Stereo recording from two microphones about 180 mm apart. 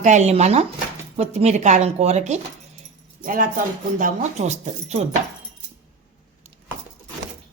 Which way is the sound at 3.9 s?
40° right (ahead or behind).